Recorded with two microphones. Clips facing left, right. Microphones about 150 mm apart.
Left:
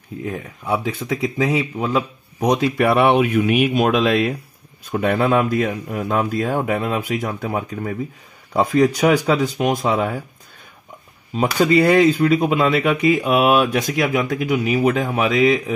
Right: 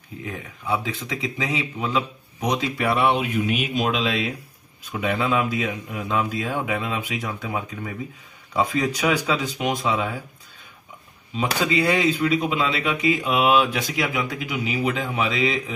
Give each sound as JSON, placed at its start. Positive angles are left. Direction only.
{"t": 0.8, "sound": "speech", "side_deg": 45}
{"t": 2.8, "sound": "speech", "side_deg": 60}
{"t": 11.3, "sound": "speech", "side_deg": 50}